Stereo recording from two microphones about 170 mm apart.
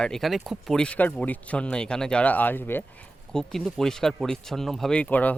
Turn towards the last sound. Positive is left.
turn(degrees=10)  # may be behind; listen again after turning